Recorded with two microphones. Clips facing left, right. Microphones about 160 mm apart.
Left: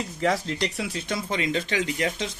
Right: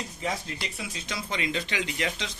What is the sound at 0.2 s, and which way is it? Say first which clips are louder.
Speech: left 9 dB; 80° left.